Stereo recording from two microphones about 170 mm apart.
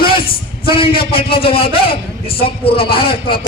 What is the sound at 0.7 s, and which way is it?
A man's voice, 30° left (ahead or behind).